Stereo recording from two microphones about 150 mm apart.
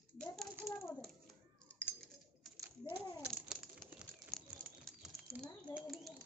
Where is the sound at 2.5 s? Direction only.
15° right (ahead or behind).